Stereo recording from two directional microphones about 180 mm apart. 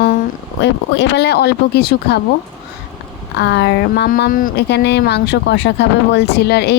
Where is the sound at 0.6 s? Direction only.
75° left (ahead or behind).